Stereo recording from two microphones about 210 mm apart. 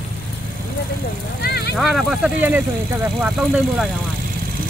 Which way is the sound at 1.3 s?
50° left (ahead or behind).